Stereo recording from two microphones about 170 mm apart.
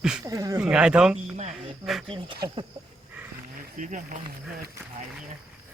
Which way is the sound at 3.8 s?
50° right (ahead or behind).